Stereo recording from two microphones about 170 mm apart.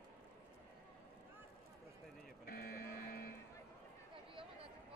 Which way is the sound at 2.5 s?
60° left (ahead or behind).